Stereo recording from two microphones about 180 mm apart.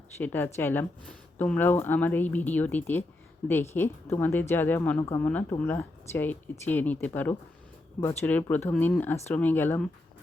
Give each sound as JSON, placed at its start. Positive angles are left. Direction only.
{"t": 0.2, "sound": "a woman's voice", "side_deg": 10}
{"t": 5.2, "sound": "a woman's voice", "side_deg": 10}